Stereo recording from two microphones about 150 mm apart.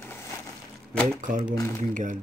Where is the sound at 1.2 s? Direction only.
60° right (ahead or behind).